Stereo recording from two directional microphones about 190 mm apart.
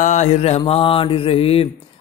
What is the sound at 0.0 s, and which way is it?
A man's voice, 40° left (ahead or behind).